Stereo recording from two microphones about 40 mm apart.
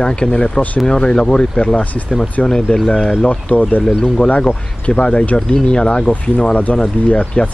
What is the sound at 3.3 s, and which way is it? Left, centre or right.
Speech, left.